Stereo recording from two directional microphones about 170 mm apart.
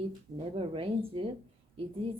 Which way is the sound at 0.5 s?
35° right (ahead or behind).